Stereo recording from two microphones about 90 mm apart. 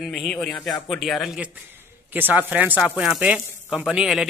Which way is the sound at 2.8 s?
5° right (ahead or behind).